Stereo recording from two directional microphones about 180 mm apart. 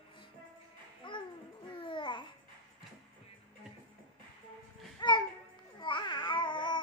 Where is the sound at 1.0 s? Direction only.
25° left (ahead or behind).